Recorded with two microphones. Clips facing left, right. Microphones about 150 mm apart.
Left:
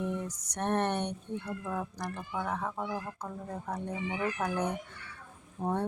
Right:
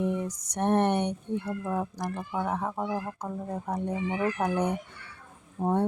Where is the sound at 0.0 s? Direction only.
15° right (ahead or behind).